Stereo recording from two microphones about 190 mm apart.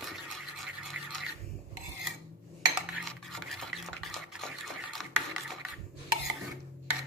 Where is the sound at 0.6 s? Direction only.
Centre (ahead or behind).